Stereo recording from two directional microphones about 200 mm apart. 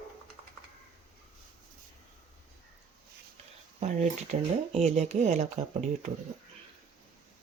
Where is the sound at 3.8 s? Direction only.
35° right (ahead or behind).